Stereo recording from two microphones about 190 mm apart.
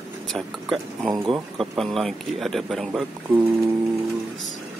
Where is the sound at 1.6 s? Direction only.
Centre (ahead or behind).